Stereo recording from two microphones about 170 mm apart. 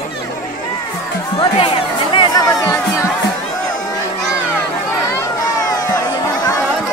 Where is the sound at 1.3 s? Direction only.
30° left (ahead or behind).